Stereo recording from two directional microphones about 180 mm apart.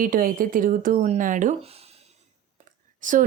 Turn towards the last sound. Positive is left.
turn(degrees=-45)  # may be behind; listen again after turning